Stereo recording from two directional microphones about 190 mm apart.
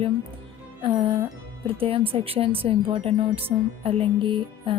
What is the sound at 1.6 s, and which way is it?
Speech, 30° right (ahead or behind).